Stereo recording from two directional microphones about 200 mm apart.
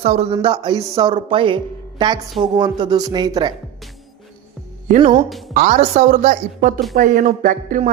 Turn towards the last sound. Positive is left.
turn(degrees=-40)  # may be behind; listen again after turning